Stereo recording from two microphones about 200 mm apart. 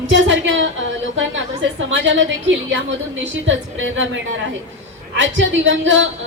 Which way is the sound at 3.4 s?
70° right (ahead or behind).